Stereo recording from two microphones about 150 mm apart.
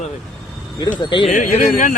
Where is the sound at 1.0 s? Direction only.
30° left (ahead or behind).